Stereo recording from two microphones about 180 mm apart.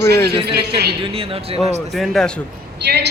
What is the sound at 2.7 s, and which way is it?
Speech, 70° right (ahead or behind).